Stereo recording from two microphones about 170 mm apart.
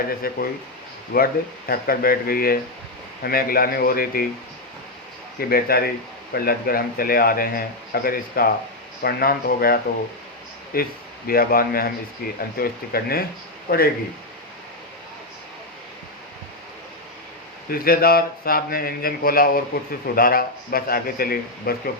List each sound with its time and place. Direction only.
0.2 s a man's voice: 60° left (ahead or behind)
5.4 s a man's voice: 60° left (ahead or behind)
17.7 s a man's voice: 60° left (ahead or behind)